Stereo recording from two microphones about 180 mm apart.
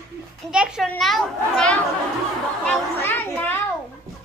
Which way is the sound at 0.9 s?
Centre (ahead or behind).